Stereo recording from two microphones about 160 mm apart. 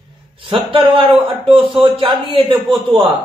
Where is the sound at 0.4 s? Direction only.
35° right (ahead or behind).